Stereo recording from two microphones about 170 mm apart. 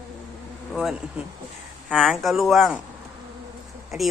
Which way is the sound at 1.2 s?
5° right (ahead or behind).